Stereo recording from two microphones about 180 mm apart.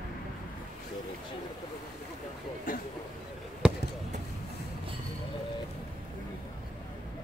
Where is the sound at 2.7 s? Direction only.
50° left (ahead or behind).